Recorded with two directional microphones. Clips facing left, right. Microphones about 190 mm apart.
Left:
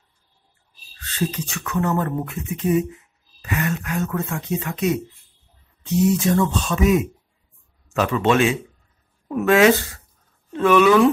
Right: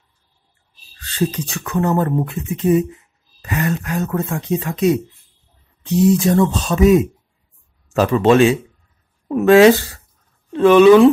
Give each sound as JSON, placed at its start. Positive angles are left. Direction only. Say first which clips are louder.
{"t": 1.0, "sound": "speech", "louder": "right 5 dB", "side_deg": -35}
{"t": 6.1, "sound": "speech", "louder": "right 4 dB", "side_deg": -35}